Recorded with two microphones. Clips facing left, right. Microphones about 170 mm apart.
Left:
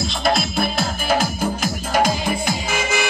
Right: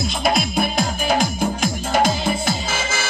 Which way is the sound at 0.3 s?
Centre (ahead or behind).